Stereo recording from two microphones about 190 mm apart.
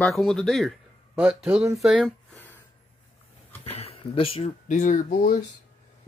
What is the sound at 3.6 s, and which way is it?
Speech, 30° left (ahead or behind).